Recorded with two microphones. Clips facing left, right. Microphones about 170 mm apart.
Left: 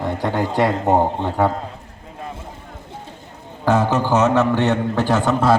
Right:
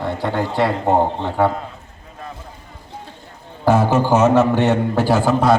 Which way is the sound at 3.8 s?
15° right (ahead or behind).